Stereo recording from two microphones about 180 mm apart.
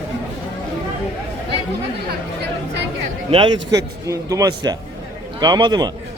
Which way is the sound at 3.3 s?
25° right (ahead or behind).